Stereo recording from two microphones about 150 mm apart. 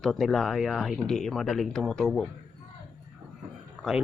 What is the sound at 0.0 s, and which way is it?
Speech, centre (ahead or behind).